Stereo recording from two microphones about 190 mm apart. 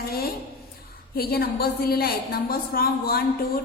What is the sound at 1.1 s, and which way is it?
A woman's voice, 50° left (ahead or behind).